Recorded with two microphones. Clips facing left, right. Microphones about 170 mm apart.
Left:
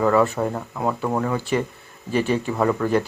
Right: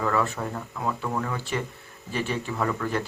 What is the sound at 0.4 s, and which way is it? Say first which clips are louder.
Speech: left 6 dB; 40° left (ahead or behind).